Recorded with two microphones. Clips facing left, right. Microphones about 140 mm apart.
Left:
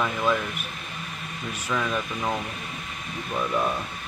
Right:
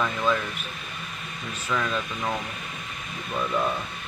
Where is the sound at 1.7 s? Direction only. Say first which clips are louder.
Even; 10° left (ahead or behind).